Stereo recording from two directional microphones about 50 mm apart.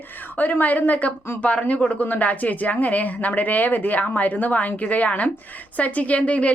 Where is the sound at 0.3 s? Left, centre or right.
Left.